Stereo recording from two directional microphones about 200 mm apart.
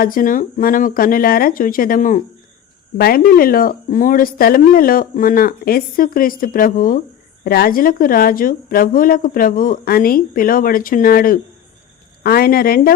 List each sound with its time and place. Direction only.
0.0 s a woman's voice: 45° left (ahead or behind)